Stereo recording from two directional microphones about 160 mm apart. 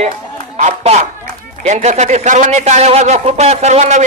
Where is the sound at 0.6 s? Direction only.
45° right (ahead or behind).